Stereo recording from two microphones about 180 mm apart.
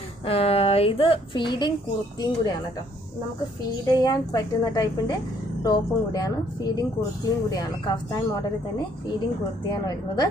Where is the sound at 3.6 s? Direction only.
20° left (ahead or behind).